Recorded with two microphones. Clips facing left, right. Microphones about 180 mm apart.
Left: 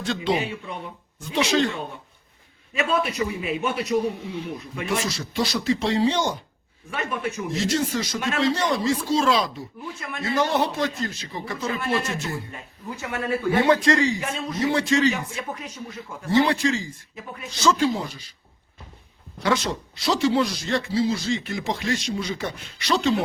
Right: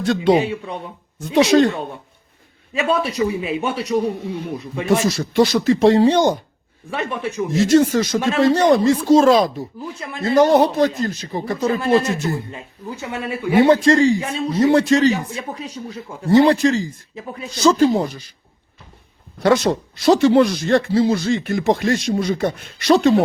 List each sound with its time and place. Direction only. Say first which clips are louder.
0.0 s speech: right 9 dB; 55° right (ahead or behind)
1.5 s speech: right 8 dB; 45° right (ahead or behind)
3.0 s speech: right 5 dB; 35° right (ahead or behind)
4.2 s speech: right 5 dB; 50° right (ahead or behind)
6.9 s speech: right 4 dB; 30° right (ahead or behind)
7.5 s speech: right 11 dB; 45° right (ahead or behind)
12.5 s speech: right 4 dB; 25° right (ahead or behind)
13.7 s speech: right 6 dB; 30° right (ahead or behind)
19.4 s speech: right 8 dB; 45° right (ahead or behind)